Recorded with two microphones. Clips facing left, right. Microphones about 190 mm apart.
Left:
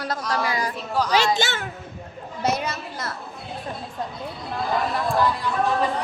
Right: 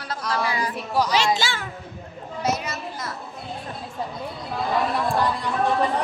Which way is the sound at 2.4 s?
60° left (ahead or behind).